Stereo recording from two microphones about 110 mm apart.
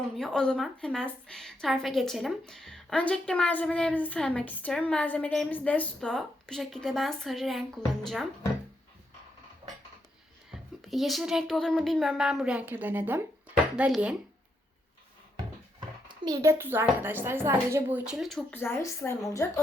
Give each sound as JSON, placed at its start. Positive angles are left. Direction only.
{"t": 0.2, "sound": "a woman's voice", "side_deg": 5}
{"t": 10.5, "sound": "a woman's voice", "side_deg": 0}
{"t": 16.0, "sound": "a sound", "side_deg": -35}
{"t": 16.4, "sound": "speech", "side_deg": -20}
{"t": 18.0, "sound": "a woman's voice", "side_deg": -5}
{"t": 18.5, "sound": "a woman's voice", "side_deg": 20}